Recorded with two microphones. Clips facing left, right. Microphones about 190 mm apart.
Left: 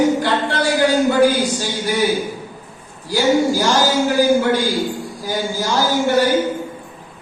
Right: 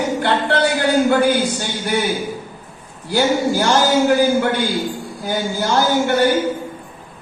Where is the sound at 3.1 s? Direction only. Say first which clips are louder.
Left 1 dB; 60° right (ahead or behind).